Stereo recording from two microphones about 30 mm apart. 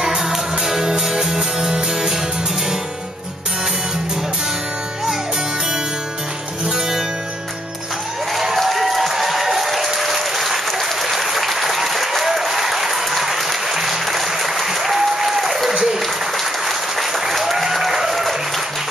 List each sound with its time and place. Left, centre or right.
0.0 s music: centre
8.3 s a sound: centre
8.5 s applause: centre